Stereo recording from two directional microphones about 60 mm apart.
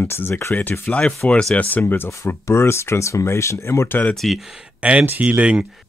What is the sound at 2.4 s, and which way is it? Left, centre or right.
Speech, left.